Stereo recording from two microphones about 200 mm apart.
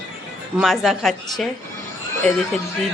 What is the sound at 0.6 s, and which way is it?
Speech, centre (ahead or behind).